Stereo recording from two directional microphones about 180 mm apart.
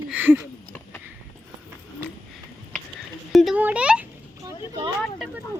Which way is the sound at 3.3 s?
Centre (ahead or behind).